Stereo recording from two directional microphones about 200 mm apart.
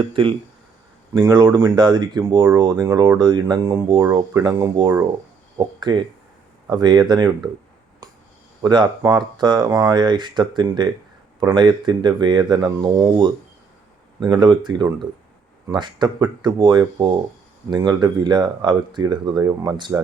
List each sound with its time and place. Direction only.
0.1 s speech: 25° right (ahead or behind)
8.0 s a sound: 20° right (ahead or behind)
8.6 s speech: 20° right (ahead or behind)